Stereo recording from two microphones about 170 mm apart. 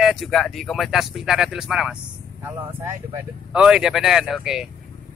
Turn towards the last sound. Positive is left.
turn(degrees=-5)  # may be behind; listen again after turning